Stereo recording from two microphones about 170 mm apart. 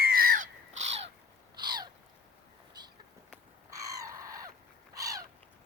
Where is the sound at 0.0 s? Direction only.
60° right (ahead or behind); by 1.0 s 40° right (ahead or behind).